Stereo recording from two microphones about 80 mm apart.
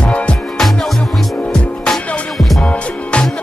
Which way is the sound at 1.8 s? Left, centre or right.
Centre.